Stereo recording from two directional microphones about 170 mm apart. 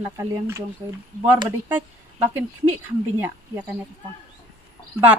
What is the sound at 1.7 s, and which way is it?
Speech, 10° right (ahead or behind).